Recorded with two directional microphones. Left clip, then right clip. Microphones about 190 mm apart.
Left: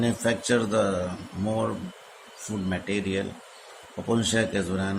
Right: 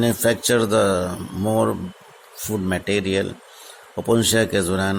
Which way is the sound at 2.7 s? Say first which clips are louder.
Right 7 dB; 50° right (ahead or behind).